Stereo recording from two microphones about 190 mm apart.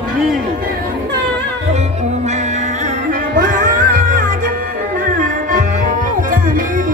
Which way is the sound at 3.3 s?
45° right (ahead or behind).